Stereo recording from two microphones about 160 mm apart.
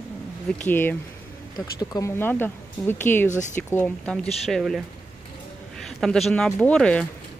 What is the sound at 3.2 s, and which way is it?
Speech, 50° left (ahead or behind).